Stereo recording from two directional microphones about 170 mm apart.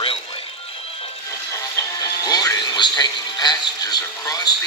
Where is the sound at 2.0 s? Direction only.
20° left (ahead or behind).